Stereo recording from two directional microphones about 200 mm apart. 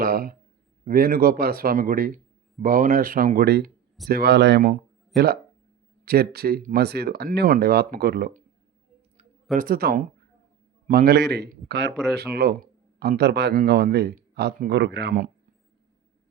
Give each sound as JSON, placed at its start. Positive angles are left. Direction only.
{"t": 0.0, "sound": "speech", "side_deg": -45}
{"t": 9.6, "sound": "speech", "side_deg": -50}